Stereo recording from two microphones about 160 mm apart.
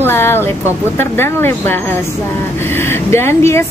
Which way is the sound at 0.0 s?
15° left (ahead or behind).